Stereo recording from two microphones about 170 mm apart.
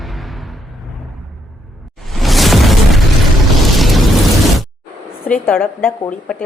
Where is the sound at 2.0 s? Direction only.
Centre (ahead or behind).